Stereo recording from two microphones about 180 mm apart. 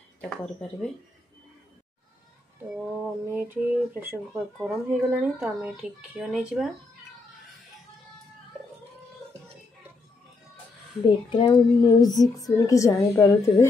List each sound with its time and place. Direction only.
3.3 s speech: 10° right (ahead or behind)
11.1 s a child's voice: 25° left (ahead or behind)